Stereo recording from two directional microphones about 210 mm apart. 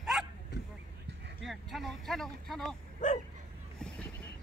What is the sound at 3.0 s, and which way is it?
Bow-wow, 35° left (ahead or behind).